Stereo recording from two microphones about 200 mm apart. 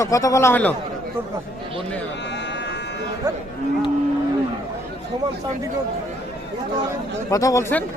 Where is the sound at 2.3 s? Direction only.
60° left (ahead or behind).